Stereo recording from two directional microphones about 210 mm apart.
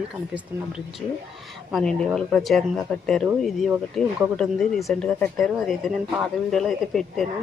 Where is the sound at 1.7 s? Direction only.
Centre (ahead or behind).